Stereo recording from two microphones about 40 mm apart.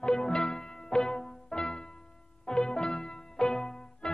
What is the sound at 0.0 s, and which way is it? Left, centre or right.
Music, centre.